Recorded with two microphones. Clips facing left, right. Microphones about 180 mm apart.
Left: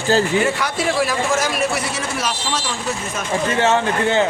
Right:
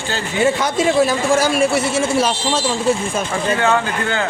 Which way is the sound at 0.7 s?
25° right (ahead or behind).